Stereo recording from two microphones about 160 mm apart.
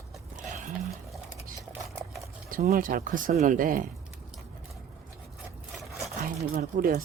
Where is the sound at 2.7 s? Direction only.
60° right (ahead or behind).